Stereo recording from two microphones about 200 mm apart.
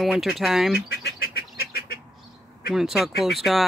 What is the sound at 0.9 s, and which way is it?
Duck, 50° left (ahead or behind).